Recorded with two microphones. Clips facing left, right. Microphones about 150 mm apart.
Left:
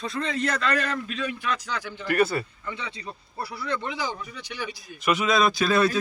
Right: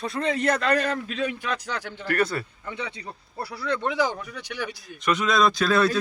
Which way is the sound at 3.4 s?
70° right (ahead or behind).